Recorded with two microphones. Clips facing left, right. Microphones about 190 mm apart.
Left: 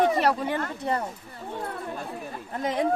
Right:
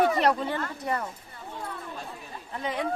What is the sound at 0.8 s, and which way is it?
Speech, 30° left (ahead or behind).